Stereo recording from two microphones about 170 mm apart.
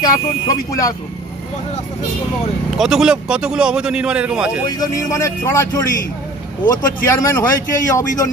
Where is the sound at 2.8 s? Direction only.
5° right (ahead or behind).